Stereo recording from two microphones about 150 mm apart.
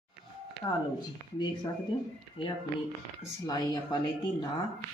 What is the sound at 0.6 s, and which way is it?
Speech, 25° left (ahead or behind).